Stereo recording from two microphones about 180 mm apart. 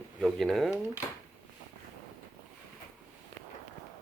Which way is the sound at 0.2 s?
Centre (ahead or behind).